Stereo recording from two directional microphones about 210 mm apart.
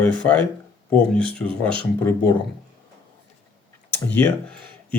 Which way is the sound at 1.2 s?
25° right (ahead or behind).